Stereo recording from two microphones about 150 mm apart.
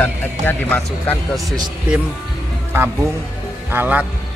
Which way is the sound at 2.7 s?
15° right (ahead or behind).